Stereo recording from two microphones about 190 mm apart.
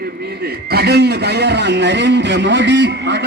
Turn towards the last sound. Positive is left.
turn(degrees=-70)  # may be behind; listen again after turning